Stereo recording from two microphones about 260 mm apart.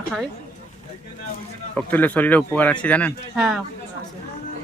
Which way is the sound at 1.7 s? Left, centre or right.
Centre.